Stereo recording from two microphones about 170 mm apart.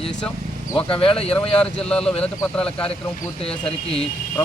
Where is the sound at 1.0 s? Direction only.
35° left (ahead or behind).